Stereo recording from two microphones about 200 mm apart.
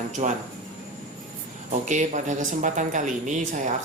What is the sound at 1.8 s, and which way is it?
Speech, 40° right (ahead or behind).